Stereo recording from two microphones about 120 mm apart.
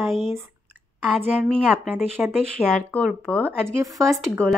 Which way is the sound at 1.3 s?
10° right (ahead or behind).